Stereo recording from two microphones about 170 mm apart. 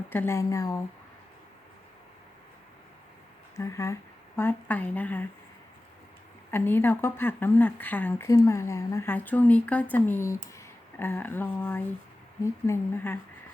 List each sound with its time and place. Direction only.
0.1 s speech: 15° left (ahead or behind)
3.5 s speech: 15° left (ahead or behind)
6.5 s speech: 15° left (ahead or behind)